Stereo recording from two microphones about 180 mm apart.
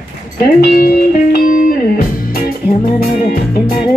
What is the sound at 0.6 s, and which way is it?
Music, 60° left (ahead or behind).